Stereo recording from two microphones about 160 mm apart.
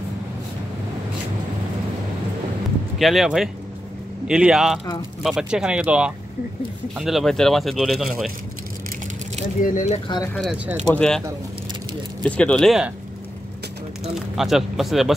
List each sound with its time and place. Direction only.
3.0 s speech: centre (ahead or behind)
9.6 s speech: 55° left (ahead or behind)
9.8 s speech: 30° left (ahead or behind)
10.3 s speech: centre (ahead or behind)
14.1 s speech: centre (ahead or behind)